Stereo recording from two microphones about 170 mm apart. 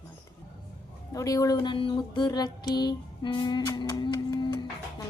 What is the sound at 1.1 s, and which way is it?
Music, 20° left (ahead or behind).